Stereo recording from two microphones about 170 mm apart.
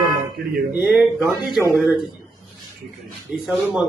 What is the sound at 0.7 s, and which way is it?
A man's voice, 10° right (ahead or behind).